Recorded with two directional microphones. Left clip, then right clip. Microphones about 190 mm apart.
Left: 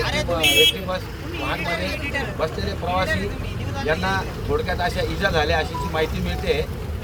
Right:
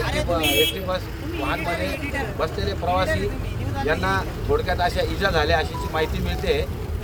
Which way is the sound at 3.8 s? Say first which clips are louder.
Even; 10° right (ahead or behind).